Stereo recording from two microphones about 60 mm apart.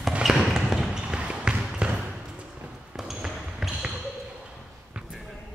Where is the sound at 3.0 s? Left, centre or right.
Centre.